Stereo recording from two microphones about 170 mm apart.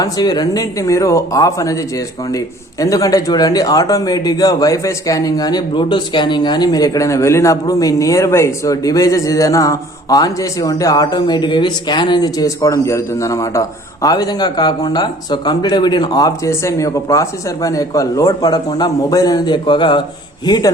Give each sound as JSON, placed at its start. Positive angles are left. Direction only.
{"t": 0.0, "sound": "speech", "side_deg": 25}